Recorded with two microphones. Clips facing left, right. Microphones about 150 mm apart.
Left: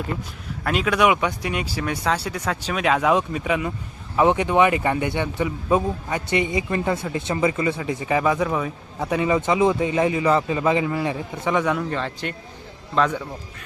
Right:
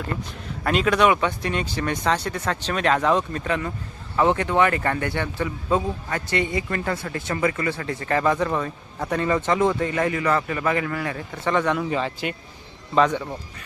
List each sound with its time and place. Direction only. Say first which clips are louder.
0.6 s speech: right 1 dB; 5° left (ahead or behind)
11.8 s a man's voice: right 1 dB; 5° right (ahead or behind)